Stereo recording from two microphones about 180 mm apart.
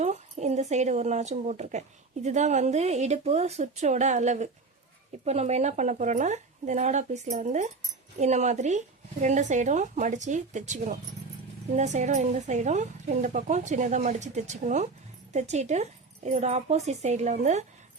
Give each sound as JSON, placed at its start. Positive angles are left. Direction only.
{"t": 0.0, "sound": "a woman's voice", "side_deg": -40}